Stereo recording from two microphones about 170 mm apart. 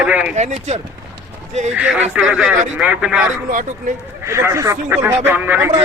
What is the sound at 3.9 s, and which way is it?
Speech, 55° right (ahead or behind).